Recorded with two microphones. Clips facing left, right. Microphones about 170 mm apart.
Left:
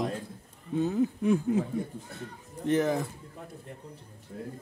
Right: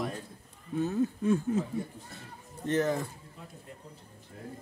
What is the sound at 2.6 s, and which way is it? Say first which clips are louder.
Speech: left 2 dB; 15° left (ahead or behind).